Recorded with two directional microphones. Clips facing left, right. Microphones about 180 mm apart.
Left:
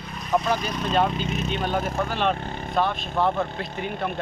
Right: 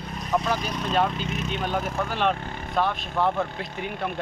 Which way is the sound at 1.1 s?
25° left (ahead or behind).